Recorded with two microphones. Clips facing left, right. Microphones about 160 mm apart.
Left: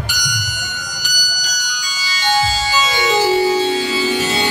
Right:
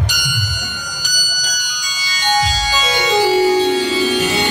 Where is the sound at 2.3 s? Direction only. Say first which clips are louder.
Even; 15° right (ahead or behind).